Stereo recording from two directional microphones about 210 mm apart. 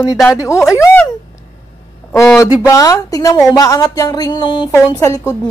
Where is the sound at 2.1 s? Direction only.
10° left (ahead or behind).